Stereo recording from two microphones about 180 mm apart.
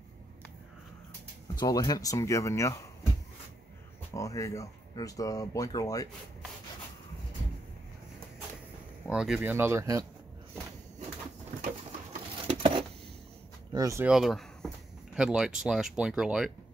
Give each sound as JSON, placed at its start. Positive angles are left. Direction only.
{"t": 1.6, "sound": "speech", "side_deg": 20}
{"t": 4.1, "sound": "speech", "side_deg": 15}
{"t": 9.1, "sound": "speech", "side_deg": -5}
{"t": 12.4, "sound": "a sound", "side_deg": -30}
{"t": 13.7, "sound": "speech", "side_deg": -15}
{"t": 14.0, "sound": "speech", "side_deg": 0}